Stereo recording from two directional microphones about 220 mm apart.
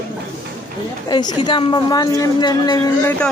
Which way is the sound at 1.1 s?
20° left (ahead or behind).